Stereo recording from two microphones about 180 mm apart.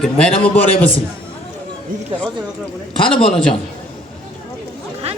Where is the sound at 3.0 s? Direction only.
5° left (ahead or behind).